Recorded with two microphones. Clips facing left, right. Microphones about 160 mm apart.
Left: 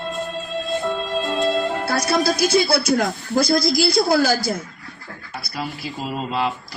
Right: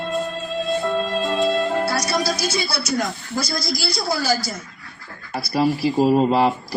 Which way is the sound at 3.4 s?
55° left (ahead or behind).